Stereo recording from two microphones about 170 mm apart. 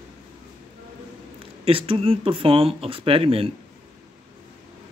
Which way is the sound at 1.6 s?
35° right (ahead or behind).